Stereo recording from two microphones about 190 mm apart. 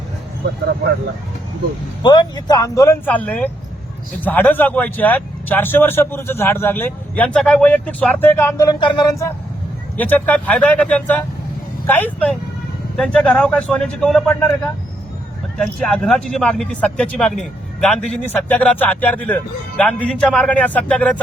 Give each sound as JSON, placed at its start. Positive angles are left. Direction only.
{"t": 2.0, "sound": "speech", "side_deg": 20}